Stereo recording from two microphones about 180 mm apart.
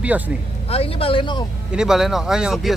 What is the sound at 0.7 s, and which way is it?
Speech, 30° left (ahead or behind).